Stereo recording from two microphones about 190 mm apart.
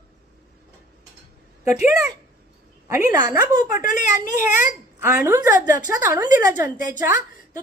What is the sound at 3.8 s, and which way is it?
Speech, 40° left (ahead or behind).